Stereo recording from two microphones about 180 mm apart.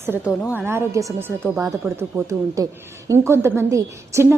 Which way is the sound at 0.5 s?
15° right (ahead or behind).